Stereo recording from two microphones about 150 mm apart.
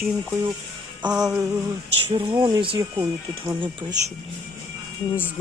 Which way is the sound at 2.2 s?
25° right (ahead or behind).